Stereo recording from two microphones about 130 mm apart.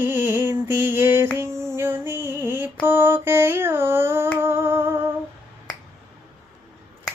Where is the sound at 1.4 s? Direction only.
20° right (ahead or behind).